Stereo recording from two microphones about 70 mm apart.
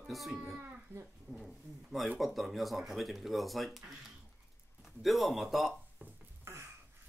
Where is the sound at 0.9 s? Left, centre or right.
Right.